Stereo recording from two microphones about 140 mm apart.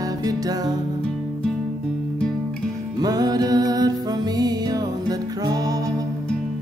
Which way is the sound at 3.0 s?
30° right (ahead or behind).